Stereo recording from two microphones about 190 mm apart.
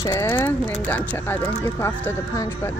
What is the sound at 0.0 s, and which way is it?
Speech, 15° left (ahead or behind).